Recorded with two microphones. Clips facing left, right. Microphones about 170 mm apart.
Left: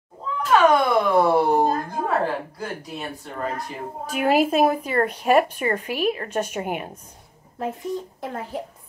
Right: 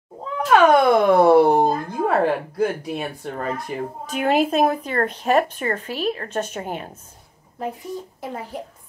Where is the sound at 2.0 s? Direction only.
65° right (ahead or behind).